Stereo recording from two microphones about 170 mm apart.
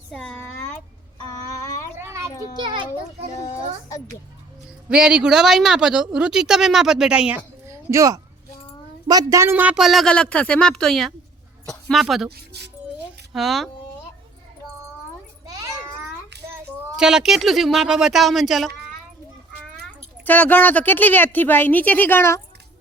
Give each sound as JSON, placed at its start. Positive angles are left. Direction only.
{"t": 0.1, "sound": "a child's voice", "side_deg": 5}
{"t": 0.3, "sound": "a sound", "side_deg": 10}
{"t": 1.2, "sound": "child singing", "side_deg": 20}
{"t": 2.0, "sound": "children playing", "side_deg": -15}
{"t": 2.6, "sound": "a child's voice", "side_deg": -25}
{"t": 3.3, "sound": "a child's voice", "side_deg": 20}
{"t": 4.9, "sound": "a woman's voice", "side_deg": -5}
{"t": 12.5, "sound": "speech", "side_deg": -80}
{"t": 13.3, "sound": "a woman's voice", "side_deg": 0}
{"t": 15.4, "sound": "children playing", "side_deg": -20}
{"t": 16.3, "sound": "child singing", "side_deg": -80}
{"t": 17.0, "sound": "a woman's voice", "side_deg": -5}
{"t": 20.2, "sound": "a woman's voice", "side_deg": 10}